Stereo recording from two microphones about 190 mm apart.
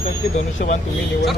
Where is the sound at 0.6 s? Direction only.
55° left (ahead or behind).